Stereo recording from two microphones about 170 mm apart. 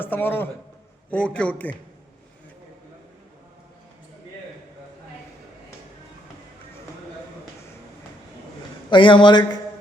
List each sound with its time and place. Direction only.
0.0 s a man's voice: 10° left (ahead or behind)
8.9 s a man's voice: 30° left (ahead or behind)